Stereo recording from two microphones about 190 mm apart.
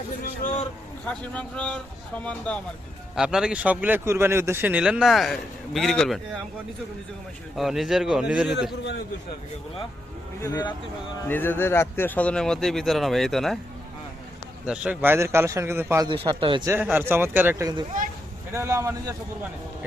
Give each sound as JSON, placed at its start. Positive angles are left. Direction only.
{"t": 0.2, "sound": "a man's voice", "side_deg": 40}
{"t": 1.0, "sound": "a man's voice", "side_deg": 5}
{"t": 7.5, "sound": "a man's voice", "side_deg": 0}
{"t": 10.4, "sound": "speech", "side_deg": 25}
{"t": 11.3, "sound": "a man's voice", "side_deg": 10}
{"t": 14.7, "sound": "a man's voice", "side_deg": -5}
{"t": 16.0, "sound": "speech", "side_deg": -25}
{"t": 16.6, "sound": "a man's voice", "side_deg": -10}